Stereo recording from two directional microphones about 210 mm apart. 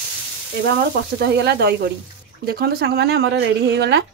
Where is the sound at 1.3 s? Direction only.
50° right (ahead or behind).